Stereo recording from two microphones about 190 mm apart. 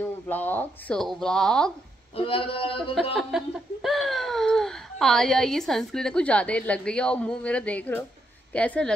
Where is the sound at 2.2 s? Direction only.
30° left (ahead or behind).